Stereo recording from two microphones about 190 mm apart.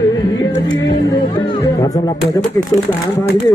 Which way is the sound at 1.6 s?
20° left (ahead or behind).